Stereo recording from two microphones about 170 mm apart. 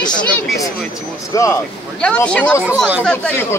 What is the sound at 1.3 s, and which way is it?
Speech, 20° left (ahead or behind).